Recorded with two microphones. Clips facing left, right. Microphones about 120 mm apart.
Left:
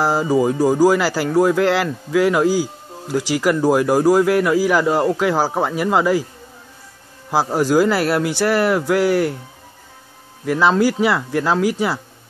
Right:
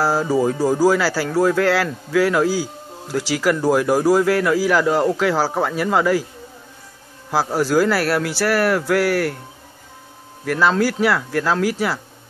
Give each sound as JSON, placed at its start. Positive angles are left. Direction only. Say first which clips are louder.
{"t": 0.0, "sound": "speech", "louder": "left 1 dB", "side_deg": 15}
{"t": 7.2, "sound": "speech", "louder": "left 2 dB", "side_deg": 15}
{"t": 10.4, "sound": "speech", "louder": "left 2 dB", "side_deg": 15}